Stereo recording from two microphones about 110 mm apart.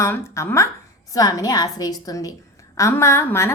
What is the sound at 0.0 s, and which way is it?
A woman's voice, 25° left (ahead or behind).